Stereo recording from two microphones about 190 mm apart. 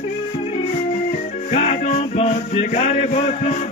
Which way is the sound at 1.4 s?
35° left (ahead or behind).